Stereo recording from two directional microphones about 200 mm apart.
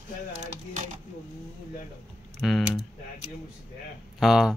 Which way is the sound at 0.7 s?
40° right (ahead or behind).